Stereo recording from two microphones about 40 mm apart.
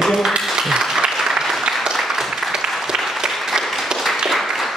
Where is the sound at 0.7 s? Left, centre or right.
Centre.